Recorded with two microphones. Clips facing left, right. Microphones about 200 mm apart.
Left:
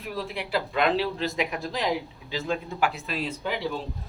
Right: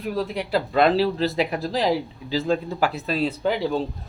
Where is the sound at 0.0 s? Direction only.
40° right (ahead or behind).